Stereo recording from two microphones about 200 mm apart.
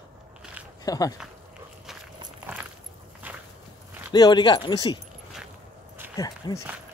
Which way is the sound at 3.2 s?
10° right (ahead or behind).